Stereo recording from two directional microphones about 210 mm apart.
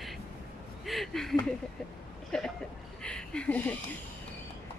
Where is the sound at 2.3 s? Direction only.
5° left (ahead or behind).